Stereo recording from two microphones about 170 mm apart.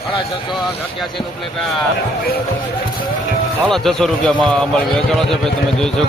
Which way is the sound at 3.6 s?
Centre (ahead or behind).